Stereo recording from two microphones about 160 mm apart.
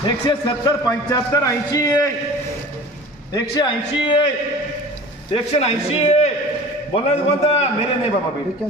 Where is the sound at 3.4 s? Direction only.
25° left (ahead or behind).